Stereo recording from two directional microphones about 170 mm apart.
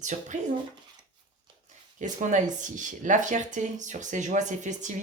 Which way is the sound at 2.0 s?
45° right (ahead or behind).